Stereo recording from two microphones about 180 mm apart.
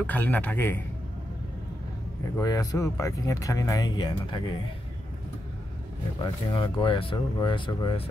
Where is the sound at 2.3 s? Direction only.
20° left (ahead or behind).